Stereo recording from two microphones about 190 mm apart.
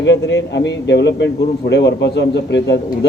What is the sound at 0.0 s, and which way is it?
A man's voice, 70° left (ahead or behind).